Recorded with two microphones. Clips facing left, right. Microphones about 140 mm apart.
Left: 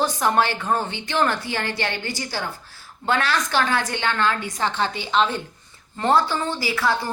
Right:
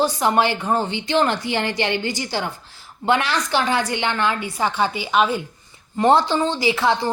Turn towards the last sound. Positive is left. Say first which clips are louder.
# right 4 dB
turn(degrees=-20)  # may be behind; listen again after turning